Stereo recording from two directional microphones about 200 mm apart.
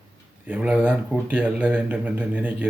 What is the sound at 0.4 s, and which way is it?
Speech, 5° right (ahead or behind).